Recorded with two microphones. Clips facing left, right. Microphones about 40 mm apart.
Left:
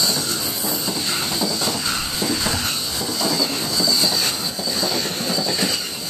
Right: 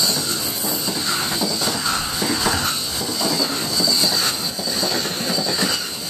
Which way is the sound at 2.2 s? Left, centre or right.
Right.